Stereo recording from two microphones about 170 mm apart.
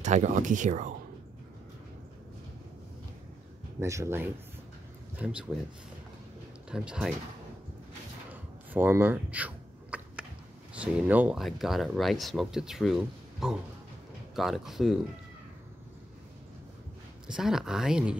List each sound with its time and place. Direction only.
0.0 s speech: 45° right (ahead or behind)
3.8 s speech: 15° right (ahead or behind)
6.7 s speech: 5° right (ahead or behind)
8.3 s a sound: 10° right (ahead or behind)
10.7 s speech: 10° right (ahead or behind)
17.3 s speech: 5° right (ahead or behind)